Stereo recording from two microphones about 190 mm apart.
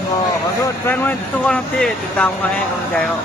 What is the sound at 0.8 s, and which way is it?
Speech, 5° left (ahead or behind).